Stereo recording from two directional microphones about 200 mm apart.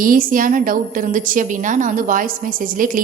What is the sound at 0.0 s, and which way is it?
A woman's voice, 45° right (ahead or behind).